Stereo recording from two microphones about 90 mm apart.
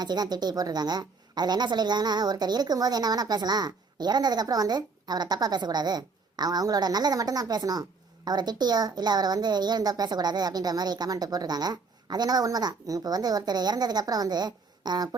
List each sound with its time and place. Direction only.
0.0 s a woman's voice: 50° right (ahead or behind)